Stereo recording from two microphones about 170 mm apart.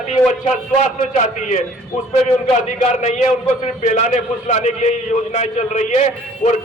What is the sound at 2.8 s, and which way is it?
A man's voice, 40° left (ahead or behind).